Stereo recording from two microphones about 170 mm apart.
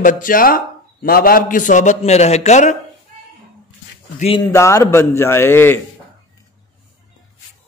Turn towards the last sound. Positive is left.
turn(degrees=15)  # may be behind; listen again after turning